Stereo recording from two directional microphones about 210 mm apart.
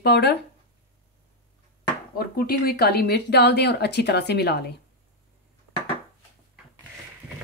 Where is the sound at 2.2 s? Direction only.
45° left (ahead or behind).